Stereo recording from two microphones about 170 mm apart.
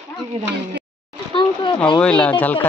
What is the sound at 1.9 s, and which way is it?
Speech, 5° left (ahead or behind).